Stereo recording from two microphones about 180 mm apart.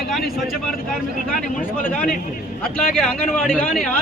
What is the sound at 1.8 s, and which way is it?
Speech, 50° left (ahead or behind).